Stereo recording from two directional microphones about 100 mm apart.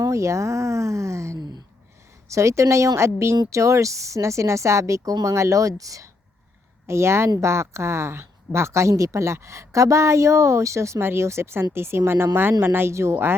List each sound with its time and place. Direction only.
0.0 s speech: 30° right (ahead or behind)